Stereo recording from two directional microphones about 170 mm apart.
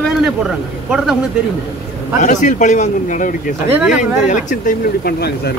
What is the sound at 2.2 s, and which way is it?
A man's voice, 45° left (ahead or behind).